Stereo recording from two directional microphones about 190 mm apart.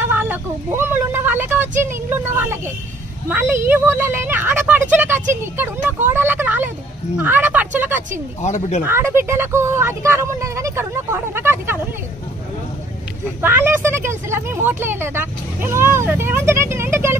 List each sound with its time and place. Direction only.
0.0 s vehicle: 10° right (ahead or behind)
1.8 s speech: 10° right (ahead or behind)
8.4 s speech: 40° left (ahead or behind)
8.8 s speech: 10° right (ahead or behind)
13.4 s speech: 10° right (ahead or behind)